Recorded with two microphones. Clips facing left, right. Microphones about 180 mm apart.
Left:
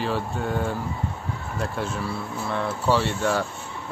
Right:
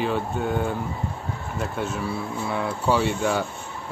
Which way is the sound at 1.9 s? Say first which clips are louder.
Right 2 dB; 5° right (ahead or behind).